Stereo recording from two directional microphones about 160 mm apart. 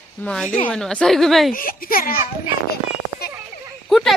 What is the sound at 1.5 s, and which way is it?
Speech, 60° left (ahead or behind).